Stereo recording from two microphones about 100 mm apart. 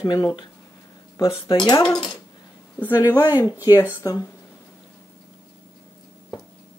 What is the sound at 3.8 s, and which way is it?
Speech, 25° left (ahead or behind).